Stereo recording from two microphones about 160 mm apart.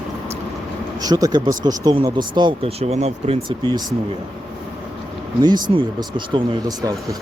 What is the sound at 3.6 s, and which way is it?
Speech, 25° right (ahead or behind).